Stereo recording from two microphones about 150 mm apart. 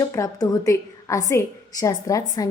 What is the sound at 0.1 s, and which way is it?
A woman's voice, 20° left (ahead or behind).